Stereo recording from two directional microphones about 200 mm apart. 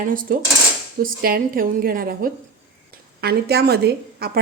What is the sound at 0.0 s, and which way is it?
A woman's voice, 45° right (ahead or behind).